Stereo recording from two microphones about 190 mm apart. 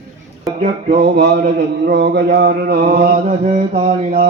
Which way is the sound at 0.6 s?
45° right (ahead or behind).